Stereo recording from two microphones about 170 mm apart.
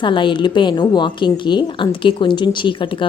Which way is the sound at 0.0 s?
30° left (ahead or behind).